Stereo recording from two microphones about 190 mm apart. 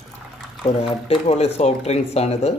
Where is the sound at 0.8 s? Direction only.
35° left (ahead or behind).